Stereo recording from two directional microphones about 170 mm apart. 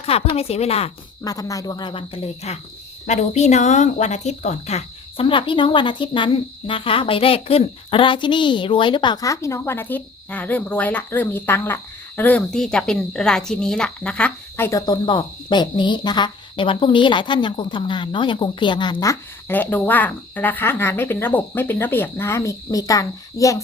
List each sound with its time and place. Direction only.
0.0 s a woman's voice: 35° left (ahead or behind)
1.2 s speech: 20° left (ahead or behind)
19.5 s speech: 10° left (ahead or behind)